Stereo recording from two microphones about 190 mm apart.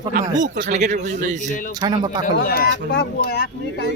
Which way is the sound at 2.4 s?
50° left (ahead or behind).